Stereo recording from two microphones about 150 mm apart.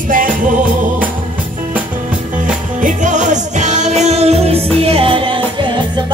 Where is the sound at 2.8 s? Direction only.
55° right (ahead or behind); by 5.4 s 35° right (ahead or behind).